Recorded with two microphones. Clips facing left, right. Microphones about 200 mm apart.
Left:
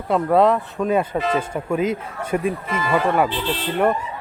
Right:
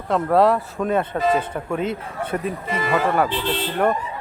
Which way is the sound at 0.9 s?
10° left (ahead or behind).